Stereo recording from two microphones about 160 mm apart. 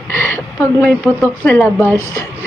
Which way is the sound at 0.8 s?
10° left (ahead or behind).